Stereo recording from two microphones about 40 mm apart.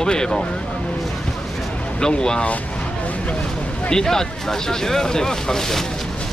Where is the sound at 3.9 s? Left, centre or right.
Centre.